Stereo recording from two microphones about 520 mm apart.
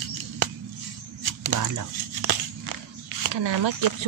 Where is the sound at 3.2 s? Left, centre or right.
Right.